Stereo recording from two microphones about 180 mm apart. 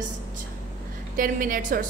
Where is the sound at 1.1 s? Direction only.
50° right (ahead or behind).